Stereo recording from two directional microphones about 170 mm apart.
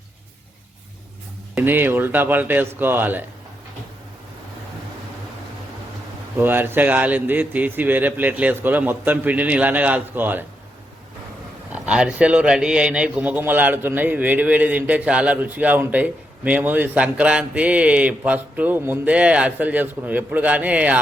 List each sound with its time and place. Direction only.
1.5 s a man's voice: 10° right (ahead or behind)
6.3 s a man's voice: 10° right (ahead or behind)
11.7 s a man's voice: 5° right (ahead or behind)